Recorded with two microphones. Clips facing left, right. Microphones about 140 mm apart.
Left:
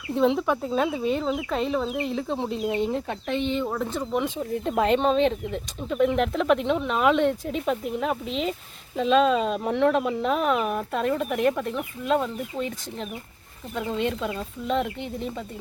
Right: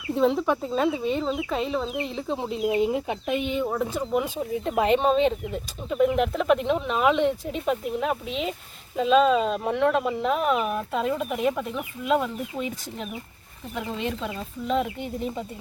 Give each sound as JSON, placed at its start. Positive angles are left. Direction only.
{"t": 0.1, "sound": "speech", "side_deg": 0}